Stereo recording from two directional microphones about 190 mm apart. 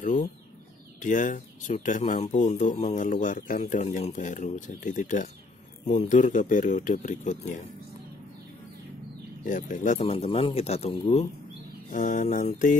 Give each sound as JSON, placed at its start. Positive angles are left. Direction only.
{"t": 0.0, "sound": "chicken", "side_deg": 40}
{"t": 0.9, "sound": "speech", "side_deg": 40}
{"t": 9.5, "sound": "speech", "side_deg": 40}
{"t": 11.9, "sound": "mantra", "side_deg": 40}